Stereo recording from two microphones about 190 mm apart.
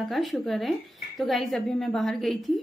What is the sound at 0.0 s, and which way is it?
A woman's voice, centre (ahead or behind).